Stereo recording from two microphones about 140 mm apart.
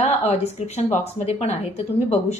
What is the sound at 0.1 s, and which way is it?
A woman's voice, 50° left (ahead or behind).